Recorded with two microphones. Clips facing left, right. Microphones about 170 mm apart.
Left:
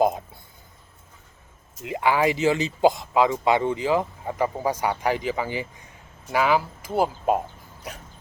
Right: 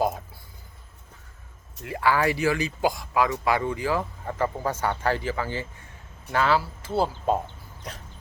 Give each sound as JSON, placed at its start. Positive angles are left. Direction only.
{"t": 1.8, "sound": "speech", "side_deg": 20}